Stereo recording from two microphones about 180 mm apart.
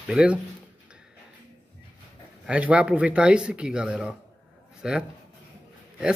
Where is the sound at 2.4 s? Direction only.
10° right (ahead or behind).